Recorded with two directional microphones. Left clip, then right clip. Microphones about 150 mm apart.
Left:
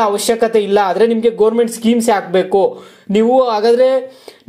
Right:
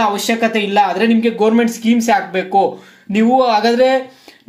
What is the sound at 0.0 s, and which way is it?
Speech, 45° left (ahead or behind).